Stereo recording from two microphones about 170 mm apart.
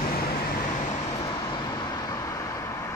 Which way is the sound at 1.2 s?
25° left (ahead or behind).